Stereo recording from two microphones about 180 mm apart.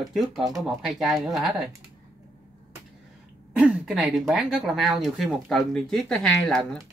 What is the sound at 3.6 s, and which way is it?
Speech, 5° right (ahead or behind).